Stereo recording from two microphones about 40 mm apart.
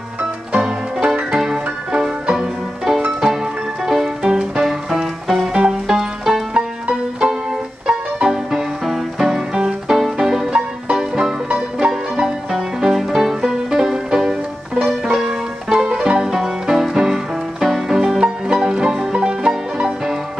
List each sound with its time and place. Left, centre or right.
1.0 s music: right
4.6 s music: centre
5.5 s music: centre
6.5 s music: right
8.5 s music: centre
9.9 s music: centre
11.1 s music: right
12.2 s music: centre
15.7 s music: right